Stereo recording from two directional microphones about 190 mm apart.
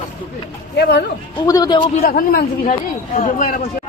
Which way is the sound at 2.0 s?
50° left (ahead or behind).